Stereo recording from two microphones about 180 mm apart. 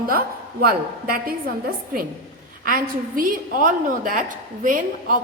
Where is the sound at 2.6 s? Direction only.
50° right (ahead or behind).